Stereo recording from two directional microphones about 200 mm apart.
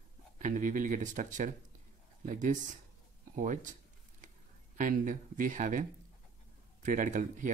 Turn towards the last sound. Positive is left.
turn(degrees=-40)  # may be behind; listen again after turning